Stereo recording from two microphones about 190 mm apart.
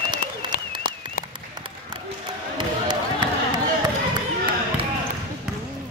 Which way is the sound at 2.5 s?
25° right (ahead or behind).